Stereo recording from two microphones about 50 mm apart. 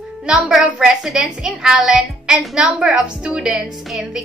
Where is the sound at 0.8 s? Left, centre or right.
Centre.